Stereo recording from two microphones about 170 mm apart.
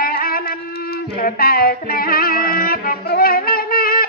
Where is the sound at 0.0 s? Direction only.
60° left (ahead or behind).